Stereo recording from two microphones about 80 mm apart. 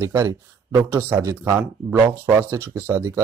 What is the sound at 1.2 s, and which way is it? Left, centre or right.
Speech, right.